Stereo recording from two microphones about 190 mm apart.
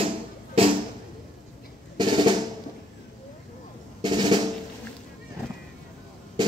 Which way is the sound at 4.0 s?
25° right (ahead or behind).